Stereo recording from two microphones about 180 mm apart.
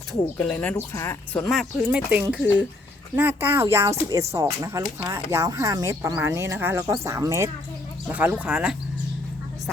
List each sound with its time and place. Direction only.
0.1 s speech: 5° left (ahead or behind)